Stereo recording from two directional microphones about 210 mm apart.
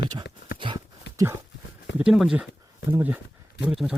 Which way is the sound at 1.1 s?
55° left (ahead or behind).